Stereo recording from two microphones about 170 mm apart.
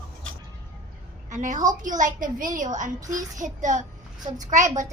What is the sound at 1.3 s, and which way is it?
A woman's voice, 50° right (ahead or behind).